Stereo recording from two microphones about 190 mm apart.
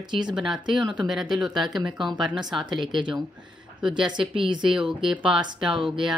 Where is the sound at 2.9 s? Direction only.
25° right (ahead or behind).